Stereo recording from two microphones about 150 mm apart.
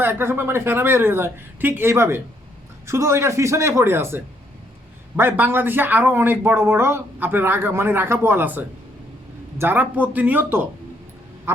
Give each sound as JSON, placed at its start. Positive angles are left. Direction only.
{"t": 0.0, "sound": "speech", "side_deg": -15}
{"t": 11.5, "sound": "quack", "side_deg": -15}